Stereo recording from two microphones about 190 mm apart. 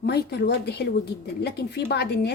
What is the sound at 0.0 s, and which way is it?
A woman's voice, 60° left (ahead or behind).